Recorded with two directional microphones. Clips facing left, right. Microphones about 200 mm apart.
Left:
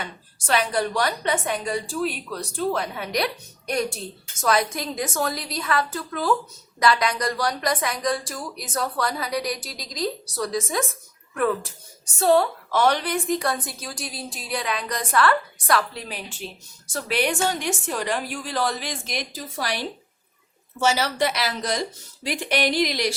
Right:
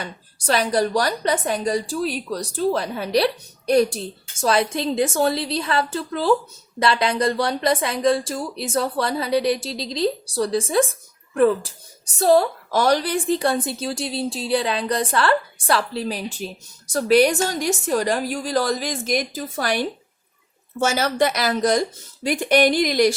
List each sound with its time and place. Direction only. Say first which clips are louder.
0.0 s a woman's voice: right 4 dB; 35° right (ahead or behind)